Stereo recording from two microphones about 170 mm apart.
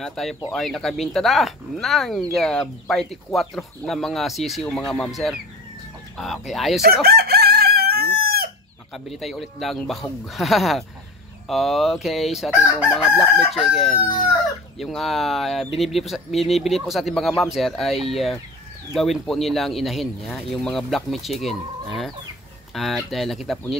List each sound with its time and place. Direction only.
0.0 s speech: centre (ahead or behind)
6.8 s chicken: 65° right (ahead or behind)
8.9 s speech: centre (ahead or behind)